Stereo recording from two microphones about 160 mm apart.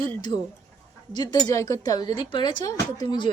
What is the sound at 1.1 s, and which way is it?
Speech, 25° left (ahead or behind).